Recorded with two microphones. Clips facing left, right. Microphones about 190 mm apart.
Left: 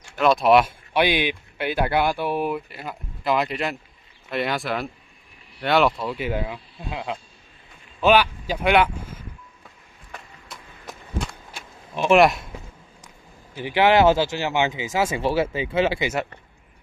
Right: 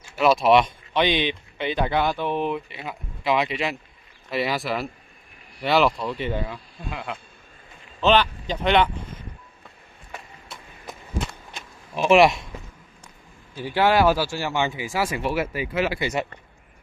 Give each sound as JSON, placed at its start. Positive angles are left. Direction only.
{"t": 0.1, "sound": "speech", "side_deg": 0}
{"t": 6.9, "sound": "speech", "side_deg": 25}
{"t": 8.0, "sound": "speech", "side_deg": 10}
{"t": 10.1, "sound": "a sound", "side_deg": 0}
{"t": 13.6, "sound": "speech", "side_deg": 15}
{"t": 16.1, "sound": "speech", "side_deg": 5}